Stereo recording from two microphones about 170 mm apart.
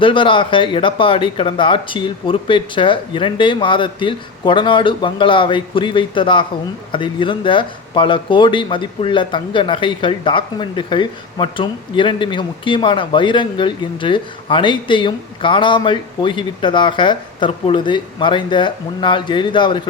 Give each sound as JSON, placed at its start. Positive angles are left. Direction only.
{"t": 0.0, "sound": "speech", "side_deg": 30}